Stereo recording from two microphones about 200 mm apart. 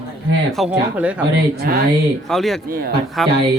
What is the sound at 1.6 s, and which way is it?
Speech, 50° right (ahead or behind).